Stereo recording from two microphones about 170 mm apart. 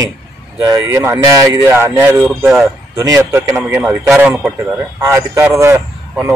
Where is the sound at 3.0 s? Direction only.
20° right (ahead or behind).